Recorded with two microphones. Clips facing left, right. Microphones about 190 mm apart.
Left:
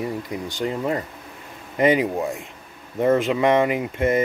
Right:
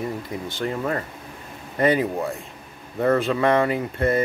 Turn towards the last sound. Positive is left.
turn(degrees=15)  # may be behind; listen again after turning